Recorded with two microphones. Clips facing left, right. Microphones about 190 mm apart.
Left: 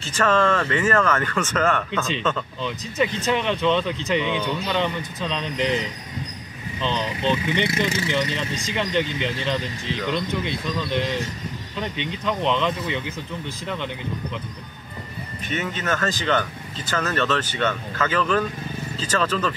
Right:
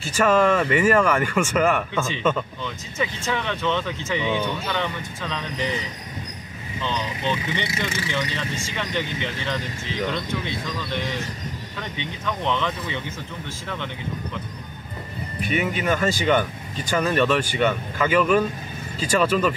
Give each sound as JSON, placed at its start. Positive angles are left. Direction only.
{"t": 0.0, "sound": "speech", "side_deg": -10}
{"t": 3.3, "sound": "speech", "side_deg": 15}
{"t": 6.8, "sound": "speech", "side_deg": 20}
{"t": 9.8, "sound": "speech", "side_deg": -15}
{"t": 10.1, "sound": "speech", "side_deg": 15}
{"t": 15.4, "sound": "speech", "side_deg": -10}